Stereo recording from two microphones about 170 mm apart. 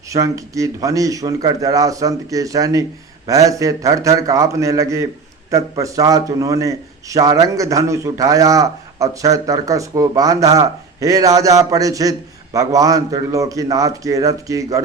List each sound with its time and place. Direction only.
0.1 s a man's voice: 20° right (ahead or behind)